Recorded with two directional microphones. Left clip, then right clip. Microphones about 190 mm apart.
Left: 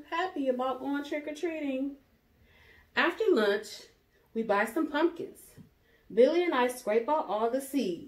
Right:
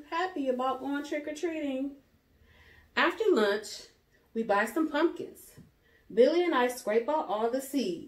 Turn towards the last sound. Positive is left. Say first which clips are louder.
# even
turn(degrees=0)  # may be behind; listen again after turning